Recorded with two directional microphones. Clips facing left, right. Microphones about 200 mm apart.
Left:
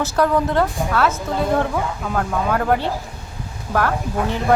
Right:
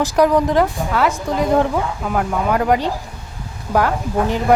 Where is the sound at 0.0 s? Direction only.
15° right (ahead or behind).